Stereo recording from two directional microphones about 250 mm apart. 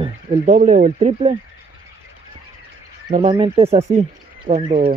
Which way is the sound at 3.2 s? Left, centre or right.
Right.